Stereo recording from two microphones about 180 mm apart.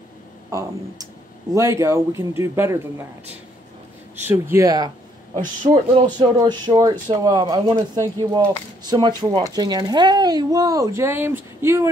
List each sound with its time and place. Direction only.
0.5 s a man's voice: 20° right (ahead or behind)
4.2 s a man's voice: 10° right (ahead or behind)